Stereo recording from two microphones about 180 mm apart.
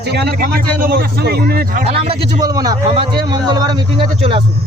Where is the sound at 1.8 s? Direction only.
35° right (ahead or behind).